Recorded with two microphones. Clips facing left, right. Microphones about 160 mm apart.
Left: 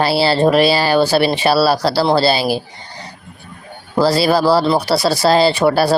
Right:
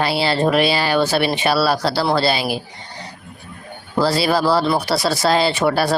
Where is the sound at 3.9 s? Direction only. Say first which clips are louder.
Left 4 dB; 35° left (ahead or behind).